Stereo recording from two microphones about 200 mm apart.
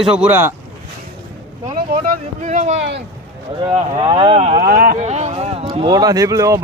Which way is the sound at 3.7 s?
25° right (ahead or behind).